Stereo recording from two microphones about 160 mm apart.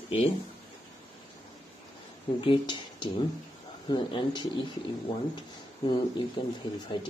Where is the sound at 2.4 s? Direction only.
30° left (ahead or behind).